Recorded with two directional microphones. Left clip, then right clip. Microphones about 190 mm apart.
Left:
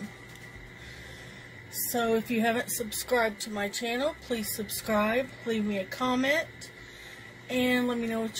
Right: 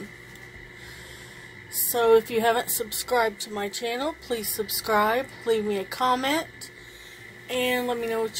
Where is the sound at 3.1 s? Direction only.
35° right (ahead or behind).